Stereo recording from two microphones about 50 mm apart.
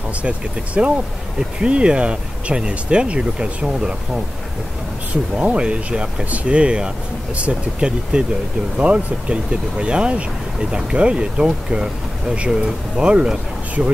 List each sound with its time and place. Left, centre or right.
0.2 s speech: right
5.3 s speech: right